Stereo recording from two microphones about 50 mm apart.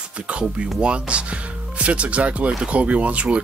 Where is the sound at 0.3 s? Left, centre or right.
Right.